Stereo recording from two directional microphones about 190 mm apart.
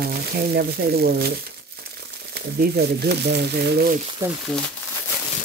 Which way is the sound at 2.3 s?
55° right (ahead or behind).